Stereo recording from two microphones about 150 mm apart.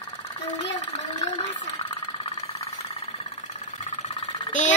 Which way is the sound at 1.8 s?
35° left (ahead or behind).